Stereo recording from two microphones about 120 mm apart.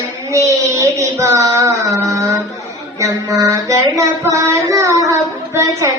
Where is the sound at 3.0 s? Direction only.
25° right (ahead or behind).